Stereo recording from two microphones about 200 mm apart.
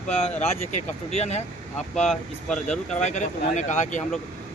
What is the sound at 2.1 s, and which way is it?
Speech, centre (ahead or behind).